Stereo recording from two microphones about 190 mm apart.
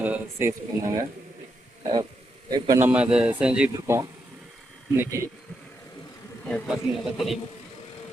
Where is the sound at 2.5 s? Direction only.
20° right (ahead or behind).